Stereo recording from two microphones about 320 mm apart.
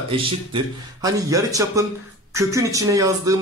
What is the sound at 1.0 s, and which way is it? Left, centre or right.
Speech, centre.